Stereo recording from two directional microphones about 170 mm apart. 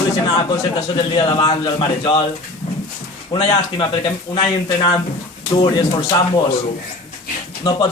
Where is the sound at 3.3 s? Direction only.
25° left (ahead or behind).